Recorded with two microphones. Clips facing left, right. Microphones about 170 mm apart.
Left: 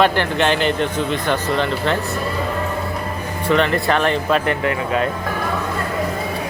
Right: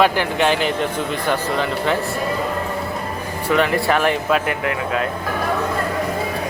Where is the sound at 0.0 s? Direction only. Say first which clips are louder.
Even; 5° right (ahead or behind).